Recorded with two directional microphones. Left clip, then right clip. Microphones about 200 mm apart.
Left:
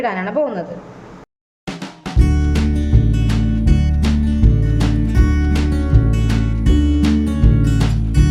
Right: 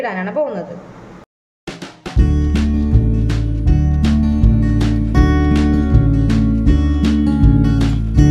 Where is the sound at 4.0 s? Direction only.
Centre (ahead or behind).